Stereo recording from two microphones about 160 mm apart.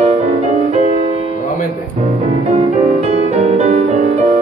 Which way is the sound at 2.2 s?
40° right (ahead or behind).